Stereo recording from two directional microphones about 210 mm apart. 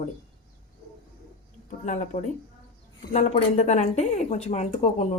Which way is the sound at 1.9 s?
35° left (ahead or behind).